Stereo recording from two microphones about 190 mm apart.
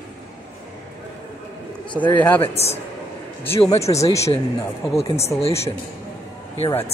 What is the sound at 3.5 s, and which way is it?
Speech, 30° left (ahead or behind).